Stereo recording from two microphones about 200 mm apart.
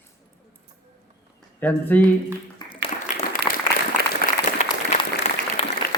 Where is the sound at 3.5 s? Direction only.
25° left (ahead or behind).